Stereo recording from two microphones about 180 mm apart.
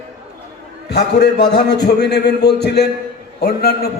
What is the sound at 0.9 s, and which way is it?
A man's voice, 70° left (ahead or behind).